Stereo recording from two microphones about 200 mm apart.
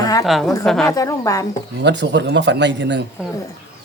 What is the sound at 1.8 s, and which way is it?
Speech, 60° right (ahead or behind).